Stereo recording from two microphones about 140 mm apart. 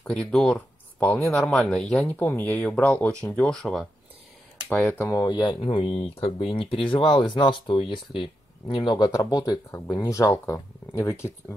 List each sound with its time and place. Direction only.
0.0 s speech: 5° left (ahead or behind)
5.2 s speech: 30° left (ahead or behind)